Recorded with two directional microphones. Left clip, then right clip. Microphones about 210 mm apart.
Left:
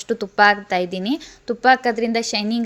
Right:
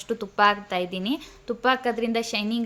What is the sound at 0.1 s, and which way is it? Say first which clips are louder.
A woman's voice: left 6 dB; 25° left (ahead or behind).